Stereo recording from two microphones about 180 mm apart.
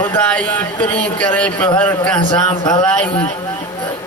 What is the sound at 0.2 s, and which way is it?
A man's voice, 10° left (ahead or behind).